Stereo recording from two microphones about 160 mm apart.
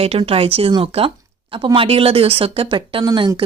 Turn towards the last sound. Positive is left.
turn(degrees=-25)  # may be behind; listen again after turning